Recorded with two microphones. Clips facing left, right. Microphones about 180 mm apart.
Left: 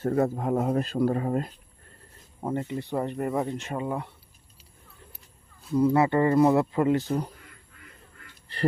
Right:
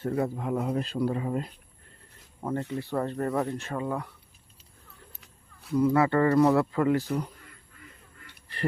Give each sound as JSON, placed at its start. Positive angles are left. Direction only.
{"t": 0.0, "sound": "speech", "side_deg": 45}
{"t": 2.4, "sound": "speech", "side_deg": 20}
{"t": 5.2, "sound": "a sound", "side_deg": -70}
{"t": 5.7, "sound": "speech", "side_deg": 25}